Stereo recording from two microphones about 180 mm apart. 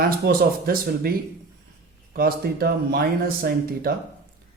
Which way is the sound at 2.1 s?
55° right (ahead or behind).